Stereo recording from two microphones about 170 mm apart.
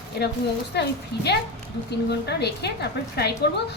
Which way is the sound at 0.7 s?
75° left (ahead or behind).